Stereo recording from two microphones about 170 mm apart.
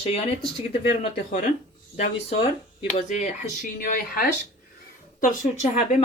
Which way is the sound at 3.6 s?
55° left (ahead or behind).